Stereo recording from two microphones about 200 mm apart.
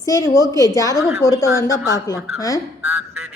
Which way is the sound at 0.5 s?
15° left (ahead or behind).